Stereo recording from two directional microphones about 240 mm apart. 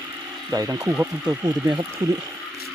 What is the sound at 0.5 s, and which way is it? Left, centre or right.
Speech, centre.